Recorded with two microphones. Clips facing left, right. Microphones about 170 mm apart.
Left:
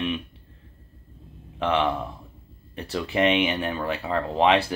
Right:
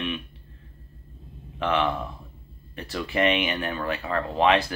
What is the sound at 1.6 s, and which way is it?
Speech, 25° left (ahead or behind).